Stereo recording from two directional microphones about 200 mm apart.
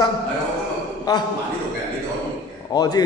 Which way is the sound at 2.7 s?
20° left (ahead or behind).